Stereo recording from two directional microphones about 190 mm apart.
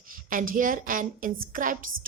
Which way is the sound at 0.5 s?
45° right (ahead or behind).